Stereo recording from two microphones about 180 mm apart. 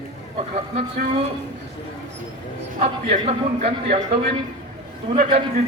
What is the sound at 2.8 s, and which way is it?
A man's voice, 35° right (ahead or behind).